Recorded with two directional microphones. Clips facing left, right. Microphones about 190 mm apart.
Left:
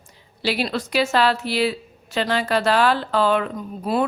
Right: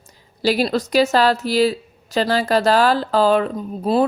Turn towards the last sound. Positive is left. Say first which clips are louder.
# right 4 dB
turn(degrees=-35)  # may be behind; listen again after turning